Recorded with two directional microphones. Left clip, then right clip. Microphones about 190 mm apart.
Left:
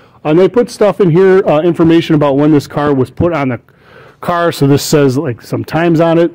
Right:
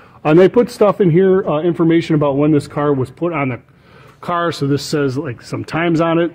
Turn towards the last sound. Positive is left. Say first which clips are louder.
# left 6 dB
turn(degrees=50)  # may be behind; listen again after turning